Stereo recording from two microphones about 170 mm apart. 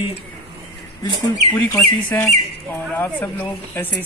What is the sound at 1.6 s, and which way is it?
Speech, 10° left (ahead or behind).